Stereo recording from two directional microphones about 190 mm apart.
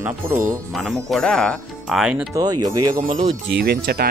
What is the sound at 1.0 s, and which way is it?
Speech, centre (ahead or behind).